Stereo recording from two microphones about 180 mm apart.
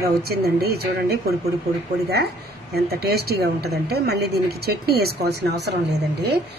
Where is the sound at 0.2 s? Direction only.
60° right (ahead or behind).